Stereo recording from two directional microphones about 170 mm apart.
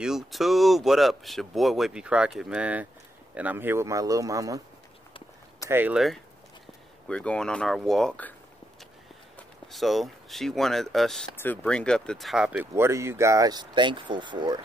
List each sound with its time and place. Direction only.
0.0 s speech: centre (ahead or behind); by 4.6 s 20° right (ahead or behind)
5.7 s speech: 10° right (ahead or behind)
7.1 s speech: 5° left (ahead or behind)
9.4 s speech: centre (ahead or behind); by 14.6 s 25° right (ahead or behind)